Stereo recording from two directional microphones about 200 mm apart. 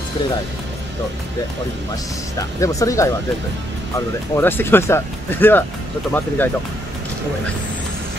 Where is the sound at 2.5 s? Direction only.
15° left (ahead or behind).